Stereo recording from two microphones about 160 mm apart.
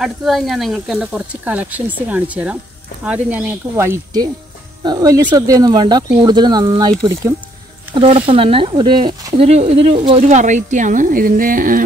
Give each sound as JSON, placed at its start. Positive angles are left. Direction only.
{"t": 0.0, "sound": "speech", "side_deg": 0}
{"t": 7.9, "sound": "speech", "side_deg": -35}
{"t": 10.2, "sound": "speech", "side_deg": -50}